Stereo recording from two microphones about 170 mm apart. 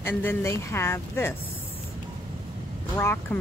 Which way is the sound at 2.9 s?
10° left (ahead or behind).